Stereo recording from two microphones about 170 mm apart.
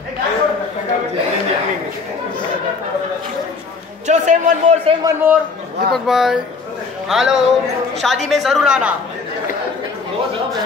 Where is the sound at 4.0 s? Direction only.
45° right (ahead or behind).